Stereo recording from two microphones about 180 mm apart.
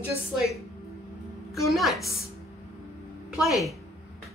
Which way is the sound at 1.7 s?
Centre (ahead or behind).